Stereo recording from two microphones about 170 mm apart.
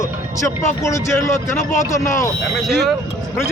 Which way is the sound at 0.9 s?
15° left (ahead or behind).